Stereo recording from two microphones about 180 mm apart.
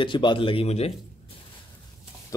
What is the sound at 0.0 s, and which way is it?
Speech, 25° left (ahead or behind).